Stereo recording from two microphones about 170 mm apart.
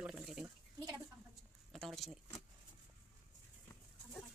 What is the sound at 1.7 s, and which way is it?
Keys jangling, centre (ahead or behind).